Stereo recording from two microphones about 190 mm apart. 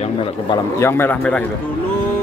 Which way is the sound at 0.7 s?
15° left (ahead or behind).